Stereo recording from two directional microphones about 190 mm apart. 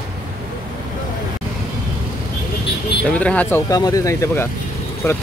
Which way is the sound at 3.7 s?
20° left (ahead or behind).